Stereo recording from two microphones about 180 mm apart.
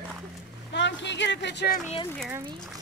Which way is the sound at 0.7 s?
75° left (ahead or behind).